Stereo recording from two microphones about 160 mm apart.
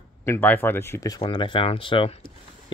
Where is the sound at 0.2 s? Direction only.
10° left (ahead or behind).